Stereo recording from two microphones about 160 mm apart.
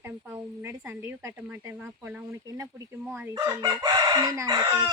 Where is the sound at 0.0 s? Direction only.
15° right (ahead or behind).